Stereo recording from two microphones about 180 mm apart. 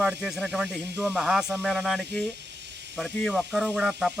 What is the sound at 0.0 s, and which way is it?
Speech, 5° right (ahead or behind).